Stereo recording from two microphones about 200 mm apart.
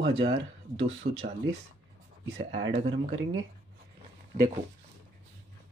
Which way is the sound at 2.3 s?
65° right (ahead or behind).